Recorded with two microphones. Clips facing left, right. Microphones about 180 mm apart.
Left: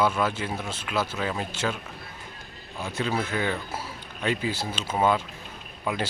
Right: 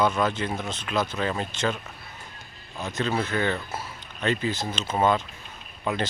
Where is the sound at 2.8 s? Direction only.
10° left (ahead or behind).